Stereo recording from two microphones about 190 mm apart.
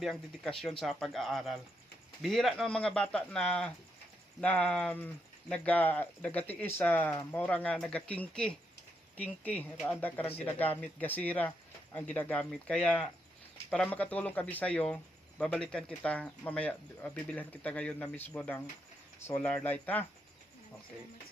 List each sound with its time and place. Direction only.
0.0 s speech: centre (ahead or behind)